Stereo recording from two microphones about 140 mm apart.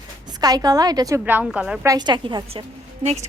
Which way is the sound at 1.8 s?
30° right (ahead or behind).